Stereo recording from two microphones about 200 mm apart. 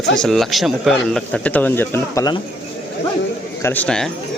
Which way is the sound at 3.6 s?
10° left (ahead or behind).